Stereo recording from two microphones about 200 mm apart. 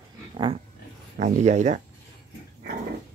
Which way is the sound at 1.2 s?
35° right (ahead or behind).